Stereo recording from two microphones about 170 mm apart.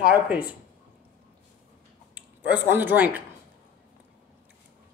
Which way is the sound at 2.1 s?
10° right (ahead or behind).